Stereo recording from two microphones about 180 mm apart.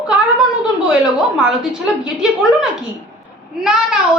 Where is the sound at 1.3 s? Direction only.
5° right (ahead or behind).